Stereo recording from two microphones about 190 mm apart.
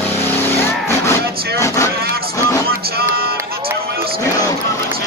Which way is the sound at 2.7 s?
55° right (ahead or behind).